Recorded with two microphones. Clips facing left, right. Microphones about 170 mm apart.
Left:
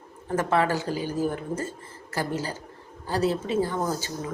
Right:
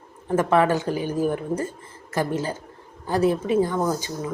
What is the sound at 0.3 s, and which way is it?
Speech, 20° right (ahead or behind).